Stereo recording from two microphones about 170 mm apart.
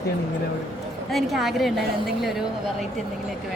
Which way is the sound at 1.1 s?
Centre (ahead or behind).